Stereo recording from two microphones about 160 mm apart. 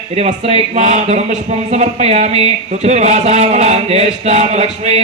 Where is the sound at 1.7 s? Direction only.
45° right (ahead or behind).